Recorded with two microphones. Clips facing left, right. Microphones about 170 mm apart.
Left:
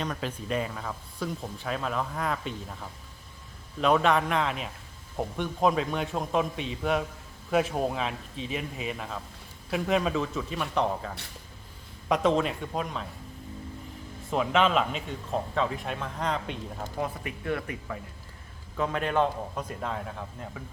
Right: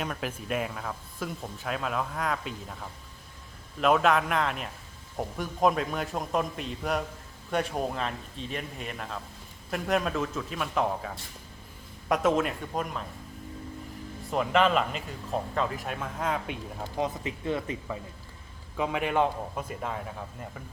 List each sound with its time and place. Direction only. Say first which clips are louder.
0.0 s speech: left 1 dB; 5° right (ahead or behind)
3.8 s speech: even; centre (ahead or behind)
14.3 s speech: even; centre (ahead or behind)
17.0 s speech: right 3 dB; 25° right (ahead or behind)
18.8 s a man's voice: even; 10° right (ahead or behind)